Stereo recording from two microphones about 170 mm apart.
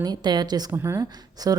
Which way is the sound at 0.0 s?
25° right (ahead or behind).